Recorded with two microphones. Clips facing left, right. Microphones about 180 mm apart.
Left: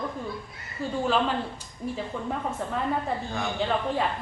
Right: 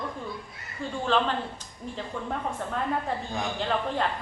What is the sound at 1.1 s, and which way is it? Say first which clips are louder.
A woman's voice: right 1 dB; 10° left (ahead or behind).